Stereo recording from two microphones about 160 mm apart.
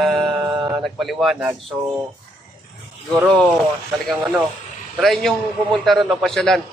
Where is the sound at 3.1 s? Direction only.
5° left (ahead or behind).